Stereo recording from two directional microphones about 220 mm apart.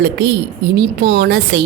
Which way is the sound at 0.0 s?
50° right (ahead or behind).